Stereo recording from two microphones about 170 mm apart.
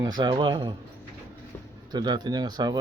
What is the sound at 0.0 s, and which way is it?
Speech, 25° right (ahead or behind).